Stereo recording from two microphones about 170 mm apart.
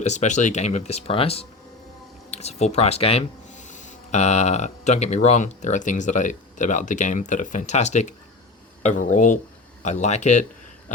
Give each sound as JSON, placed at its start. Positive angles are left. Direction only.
{"t": 0.0, "sound": "speech", "side_deg": 45}